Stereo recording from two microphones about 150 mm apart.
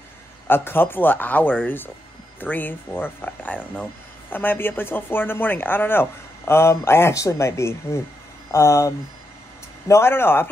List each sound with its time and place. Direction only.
0.5 s speech: 15° left (ahead or behind)